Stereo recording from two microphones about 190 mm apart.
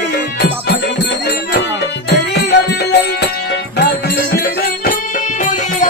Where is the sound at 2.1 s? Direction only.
65° left (ahead or behind).